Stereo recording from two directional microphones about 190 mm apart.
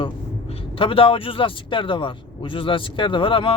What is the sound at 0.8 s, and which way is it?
Speech, 30° left (ahead or behind).